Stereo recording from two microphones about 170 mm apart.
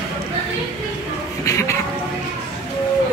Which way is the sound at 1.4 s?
15° left (ahead or behind).